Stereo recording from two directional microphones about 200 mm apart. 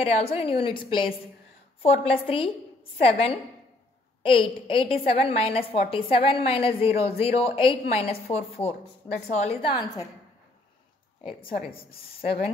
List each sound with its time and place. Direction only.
0.0 s a woman's voice: 30° left (ahead or behind)
11.2 s a woman's voice: 25° left (ahead or behind)